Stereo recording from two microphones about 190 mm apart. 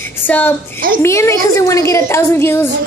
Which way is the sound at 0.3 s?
10° left (ahead or behind).